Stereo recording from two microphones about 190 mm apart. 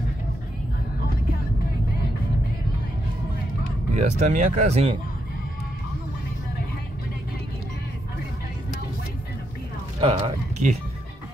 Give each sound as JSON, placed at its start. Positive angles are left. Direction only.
{"t": 3.9, "sound": "speech", "side_deg": -40}
{"t": 9.9, "sound": "speech", "side_deg": -30}